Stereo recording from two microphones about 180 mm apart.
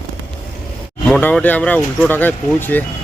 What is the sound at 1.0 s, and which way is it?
Speech, 5° left (ahead or behind).